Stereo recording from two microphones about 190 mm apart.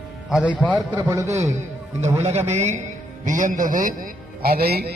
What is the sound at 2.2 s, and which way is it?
A man's voice, 35° right (ahead or behind).